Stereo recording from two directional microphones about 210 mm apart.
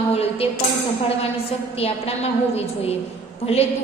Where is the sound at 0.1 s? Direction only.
30° left (ahead or behind).